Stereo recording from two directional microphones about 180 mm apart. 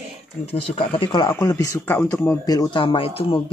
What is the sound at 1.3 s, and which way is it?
Speech, 15° left (ahead or behind).